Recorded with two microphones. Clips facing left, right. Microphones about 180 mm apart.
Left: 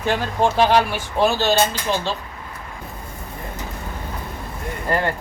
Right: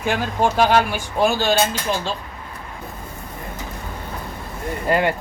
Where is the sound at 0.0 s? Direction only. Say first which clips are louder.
Even; 10° right (ahead or behind).